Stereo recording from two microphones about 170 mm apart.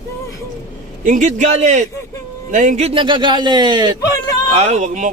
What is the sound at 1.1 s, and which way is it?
Speech, 45° right (ahead or behind).